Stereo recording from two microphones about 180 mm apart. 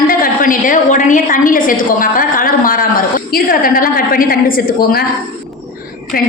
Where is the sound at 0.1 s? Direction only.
50° left (ahead or behind).